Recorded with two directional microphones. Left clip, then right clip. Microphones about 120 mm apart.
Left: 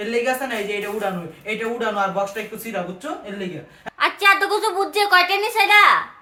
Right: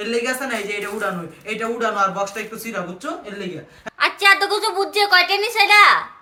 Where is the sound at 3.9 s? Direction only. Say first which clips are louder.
Right 1 dB; 15° left (ahead or behind).